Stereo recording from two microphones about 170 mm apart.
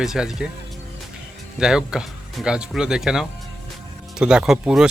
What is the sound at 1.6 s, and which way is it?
Speech, 5° right (ahead or behind).